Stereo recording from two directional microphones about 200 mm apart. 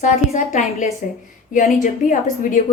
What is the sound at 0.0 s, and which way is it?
A woman's voice, 35° left (ahead or behind).